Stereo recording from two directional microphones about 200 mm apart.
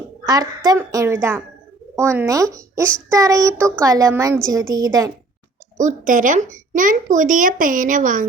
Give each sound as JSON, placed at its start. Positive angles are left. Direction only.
{"t": 0.3, "sound": "a child's voice", "side_deg": -20}
{"t": 5.7, "sound": "speech", "side_deg": -40}